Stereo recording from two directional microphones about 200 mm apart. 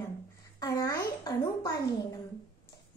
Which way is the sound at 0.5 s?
15° left (ahead or behind).